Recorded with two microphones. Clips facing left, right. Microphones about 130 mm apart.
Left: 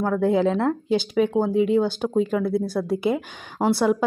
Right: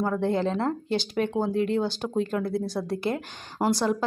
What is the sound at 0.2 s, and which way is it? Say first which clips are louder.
A woman's voice: left 5 dB; 5° left (ahead or behind).